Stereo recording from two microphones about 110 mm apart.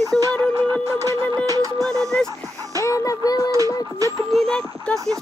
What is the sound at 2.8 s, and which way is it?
Music, 30° left (ahead or behind).